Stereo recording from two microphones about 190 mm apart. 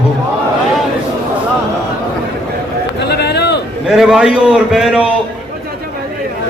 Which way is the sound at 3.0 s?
60° left (ahead or behind).